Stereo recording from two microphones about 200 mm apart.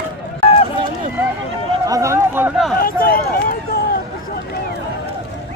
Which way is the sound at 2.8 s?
45° left (ahead or behind).